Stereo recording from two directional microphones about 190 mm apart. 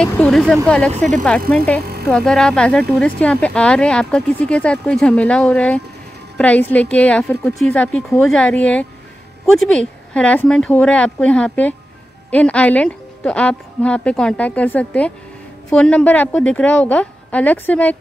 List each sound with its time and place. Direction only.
0.0 s speech: 5° left (ahead or behind)
0.9 s speech: 40° right (ahead or behind)
1.8 s a sound: 55° right (ahead or behind)
2.0 s a woman's voice: 5° left (ahead or behind)